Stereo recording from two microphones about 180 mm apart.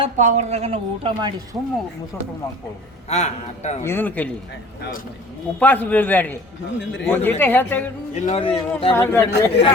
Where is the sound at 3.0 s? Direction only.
40° left (ahead or behind).